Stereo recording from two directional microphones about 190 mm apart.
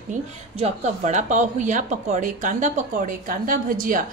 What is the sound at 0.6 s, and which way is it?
A woman's voice, 35° right (ahead or behind).